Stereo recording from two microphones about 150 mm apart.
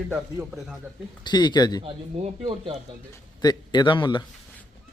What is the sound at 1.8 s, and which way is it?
Speech, 35° right (ahead or behind).